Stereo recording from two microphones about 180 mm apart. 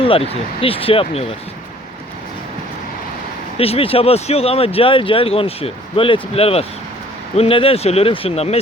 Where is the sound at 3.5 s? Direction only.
35° left (ahead or behind).